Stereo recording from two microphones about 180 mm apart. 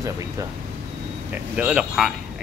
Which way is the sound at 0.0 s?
15° right (ahead or behind).